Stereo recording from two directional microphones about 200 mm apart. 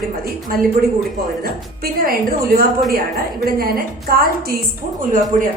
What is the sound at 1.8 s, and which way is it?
Speech, 50° right (ahead or behind).